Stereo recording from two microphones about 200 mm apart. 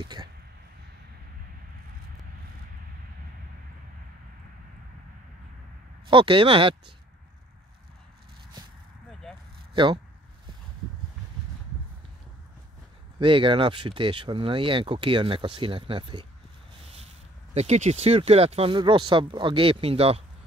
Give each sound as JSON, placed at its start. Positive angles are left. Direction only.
{"t": 0.0, "sound": "speech", "side_deg": -20}
{"t": 6.0, "sound": "speech", "side_deg": -25}
{"t": 13.2, "sound": "speech", "side_deg": -25}
{"t": 17.6, "sound": "speech", "side_deg": -35}